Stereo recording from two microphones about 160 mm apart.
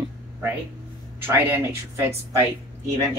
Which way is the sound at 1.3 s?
15° right (ahead or behind).